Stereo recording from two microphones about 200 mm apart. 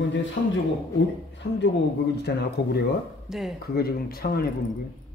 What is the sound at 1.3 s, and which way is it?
Speech, 65° left (ahead or behind).